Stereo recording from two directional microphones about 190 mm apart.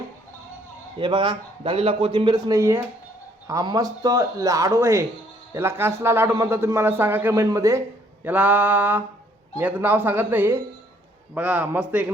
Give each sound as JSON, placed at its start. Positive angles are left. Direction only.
{"t": 0.9, "sound": "a man's voice", "side_deg": -25}